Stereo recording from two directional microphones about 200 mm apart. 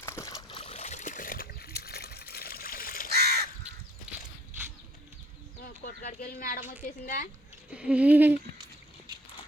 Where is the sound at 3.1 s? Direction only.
55° right (ahead or behind).